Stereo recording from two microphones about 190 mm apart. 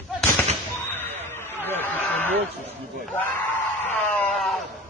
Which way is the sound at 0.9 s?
10° left (ahead or behind).